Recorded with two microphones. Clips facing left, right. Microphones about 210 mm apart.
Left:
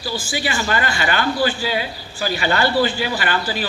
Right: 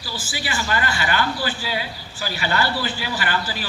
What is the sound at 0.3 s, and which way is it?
A man's voice, 25° left (ahead or behind).